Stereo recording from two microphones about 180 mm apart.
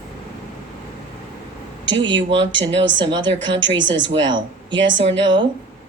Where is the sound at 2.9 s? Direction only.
25° right (ahead or behind).